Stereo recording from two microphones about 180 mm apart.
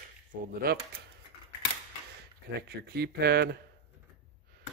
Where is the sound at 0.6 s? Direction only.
55° right (ahead or behind).